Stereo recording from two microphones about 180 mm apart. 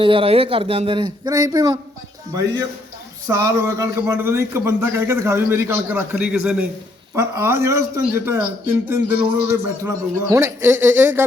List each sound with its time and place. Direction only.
0.0 s speech: 30° right (ahead or behind)
3.2 s a man's voice: 15° right (ahead or behind)